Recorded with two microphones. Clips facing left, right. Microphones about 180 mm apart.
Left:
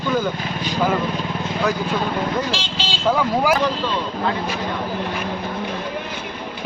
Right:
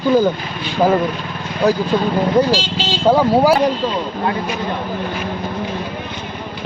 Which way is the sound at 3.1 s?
35° right (ahead or behind).